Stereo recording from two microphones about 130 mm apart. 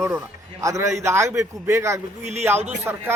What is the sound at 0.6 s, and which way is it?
A man's voice, 25° right (ahead or behind).